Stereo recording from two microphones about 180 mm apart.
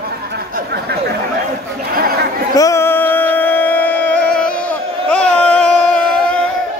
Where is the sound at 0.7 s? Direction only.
60° right (ahead or behind).